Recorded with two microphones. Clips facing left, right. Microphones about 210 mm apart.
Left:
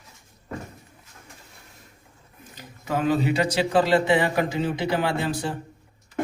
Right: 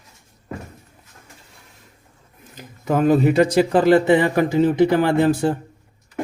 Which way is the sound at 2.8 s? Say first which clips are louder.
Right 7 dB; 50° right (ahead or behind).